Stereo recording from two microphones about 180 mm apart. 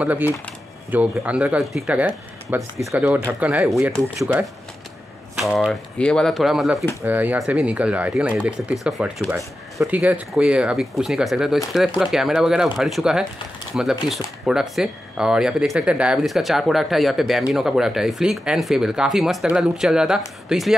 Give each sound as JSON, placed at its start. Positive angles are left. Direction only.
{"t": 0.0, "sound": "speech", "side_deg": -10}
{"t": 5.4, "sound": "speech", "side_deg": 0}